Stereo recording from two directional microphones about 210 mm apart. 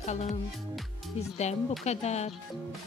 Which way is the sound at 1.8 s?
30° left (ahead or behind).